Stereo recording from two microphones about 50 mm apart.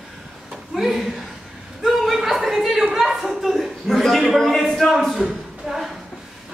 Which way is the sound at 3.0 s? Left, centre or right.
Centre.